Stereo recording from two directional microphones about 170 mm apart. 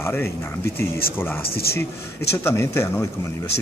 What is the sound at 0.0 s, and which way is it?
Speech, 15° left (ahead or behind).